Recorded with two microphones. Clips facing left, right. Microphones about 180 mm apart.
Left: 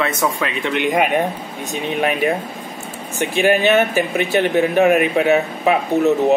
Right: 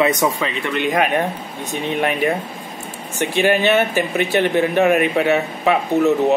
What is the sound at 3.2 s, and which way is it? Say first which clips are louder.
Speech: left 1 dB; 15° left (ahead or behind).